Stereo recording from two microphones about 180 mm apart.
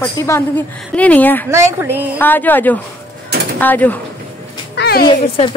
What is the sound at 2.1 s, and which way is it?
A woman's voice, 10° left (ahead or behind).